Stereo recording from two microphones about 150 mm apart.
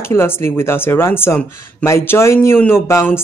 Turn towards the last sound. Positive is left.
turn(degrees=15)  # may be behind; listen again after turning